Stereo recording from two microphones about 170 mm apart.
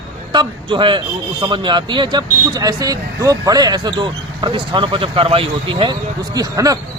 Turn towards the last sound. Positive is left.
turn(degrees=-20)  # may be behind; listen again after turning